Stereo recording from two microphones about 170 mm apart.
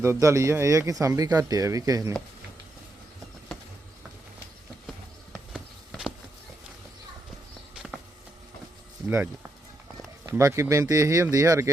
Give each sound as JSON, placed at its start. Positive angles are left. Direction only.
{"t": 0.0, "sound": "speech", "side_deg": -15}
{"t": 5.5, "sound": "a sound", "side_deg": 0}
{"t": 9.0, "sound": "speech", "side_deg": -15}